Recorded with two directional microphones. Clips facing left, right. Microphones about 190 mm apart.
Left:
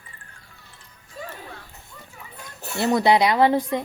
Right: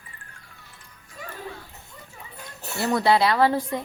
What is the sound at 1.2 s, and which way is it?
Music, 30° left (ahead or behind).